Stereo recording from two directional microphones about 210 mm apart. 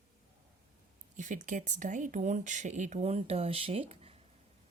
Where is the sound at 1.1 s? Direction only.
35° right (ahead or behind).